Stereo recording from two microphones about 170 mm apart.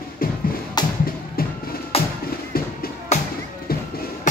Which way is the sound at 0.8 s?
25° left (ahead or behind).